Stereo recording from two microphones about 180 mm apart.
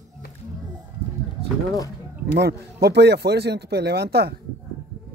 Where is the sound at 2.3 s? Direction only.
65° right (ahead or behind).